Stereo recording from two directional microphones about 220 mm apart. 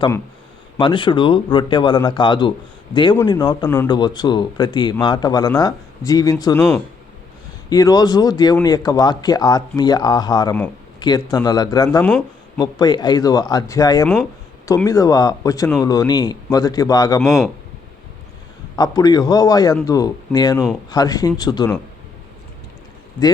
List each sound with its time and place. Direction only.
0.8 s speech: 20° left (ahead or behind)
7.7 s a man's voice: 15° left (ahead or behind)
11.9 s speech: 5° left (ahead or behind)
12.5 s a man's voice: 20° left (ahead or behind)
17.2 s speech: centre (ahead or behind)
18.8 s a man's voice: 15° left (ahead or behind)